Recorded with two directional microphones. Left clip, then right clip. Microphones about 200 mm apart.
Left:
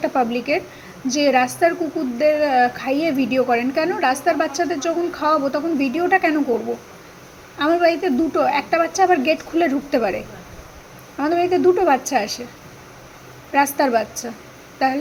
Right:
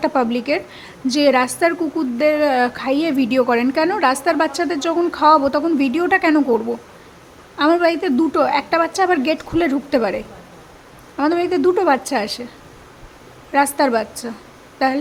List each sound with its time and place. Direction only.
0.0 s a woman's voice: 15° right (ahead or behind)
7.6 s a woman's voice: 15° right (ahead or behind)
13.7 s a woman's voice: 10° right (ahead or behind)